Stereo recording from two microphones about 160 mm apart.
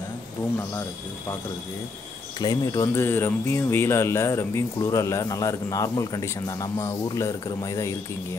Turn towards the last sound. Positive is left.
turn(degrees=20)  # may be behind; listen again after turning